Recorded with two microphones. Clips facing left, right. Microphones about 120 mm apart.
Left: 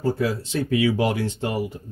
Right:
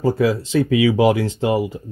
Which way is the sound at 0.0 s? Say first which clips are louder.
Right 6 dB; 90° right.